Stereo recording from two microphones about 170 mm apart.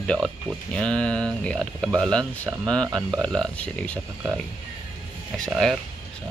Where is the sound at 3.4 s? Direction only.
5° left (ahead or behind).